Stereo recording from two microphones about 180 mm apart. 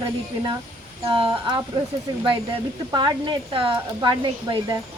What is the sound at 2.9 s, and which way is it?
Speech, 25° right (ahead or behind).